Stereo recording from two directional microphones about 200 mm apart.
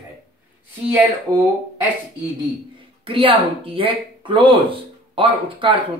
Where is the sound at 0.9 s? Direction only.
10° right (ahead or behind).